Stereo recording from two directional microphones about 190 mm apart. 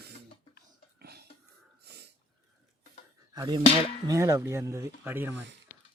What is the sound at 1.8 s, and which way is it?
Wheeze, 60° right (ahead or behind).